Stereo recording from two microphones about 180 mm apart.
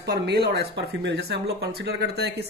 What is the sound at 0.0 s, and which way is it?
Speech, 65° right (ahead or behind).